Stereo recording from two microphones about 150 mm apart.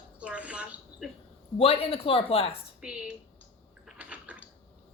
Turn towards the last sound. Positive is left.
turn(degrees=-10)  # may be behind; listen again after turning